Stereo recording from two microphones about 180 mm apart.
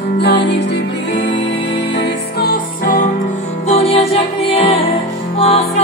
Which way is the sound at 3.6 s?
35° left (ahead or behind).